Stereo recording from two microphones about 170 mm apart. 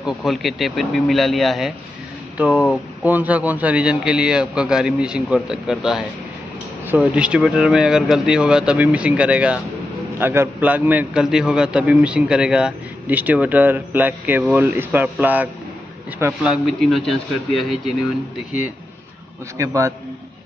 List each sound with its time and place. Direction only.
0.0 s a man's voice: centre (ahead or behind)
16.6 s a man's voice: centre (ahead or behind)
19.5 s a man's voice: 20° right (ahead or behind)